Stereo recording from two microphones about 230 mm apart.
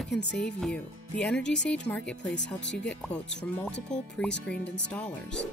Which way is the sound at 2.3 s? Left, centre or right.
Left.